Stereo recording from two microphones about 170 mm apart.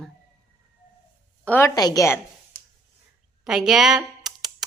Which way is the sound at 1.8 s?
20° left (ahead or behind).